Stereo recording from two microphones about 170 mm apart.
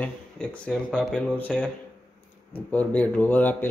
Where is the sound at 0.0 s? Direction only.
5° left (ahead or behind).